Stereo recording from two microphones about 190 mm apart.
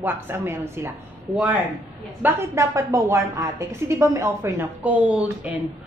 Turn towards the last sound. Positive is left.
turn(degrees=-5)  # may be behind; listen again after turning